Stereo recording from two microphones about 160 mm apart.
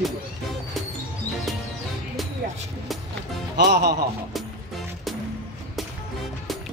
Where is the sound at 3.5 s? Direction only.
90° right.